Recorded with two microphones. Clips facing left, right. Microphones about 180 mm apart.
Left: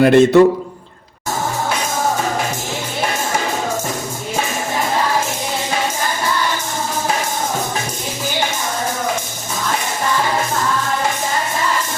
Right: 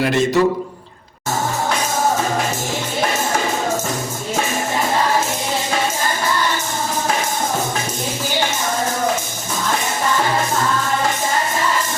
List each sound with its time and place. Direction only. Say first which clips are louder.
0.0 s a man's voice: left 7 dB; 55° left (ahead or behind)